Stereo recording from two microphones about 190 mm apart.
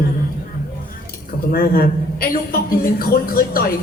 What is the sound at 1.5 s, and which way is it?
A man's voice, 50° left (ahead or behind).